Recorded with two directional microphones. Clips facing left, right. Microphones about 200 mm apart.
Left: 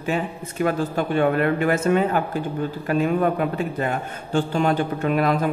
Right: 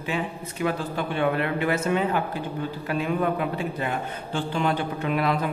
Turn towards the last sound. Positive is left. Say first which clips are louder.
# left 4 dB
turn(degrees=45)  # may be behind; listen again after turning